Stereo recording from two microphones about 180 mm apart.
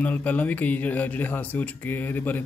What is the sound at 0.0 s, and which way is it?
Speech, 10° left (ahead or behind).